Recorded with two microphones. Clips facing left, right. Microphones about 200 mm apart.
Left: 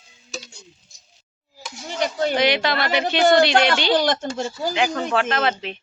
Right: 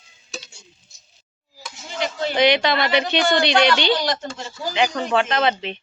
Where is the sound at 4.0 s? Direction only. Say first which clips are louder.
Left 3 dB; 50° left (ahead or behind).